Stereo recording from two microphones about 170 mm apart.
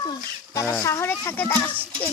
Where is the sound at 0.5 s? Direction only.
15° left (ahead or behind).